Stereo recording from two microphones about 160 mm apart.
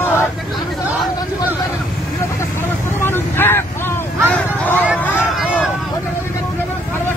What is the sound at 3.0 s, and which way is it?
Vehicle, 15° left (ahead or behind).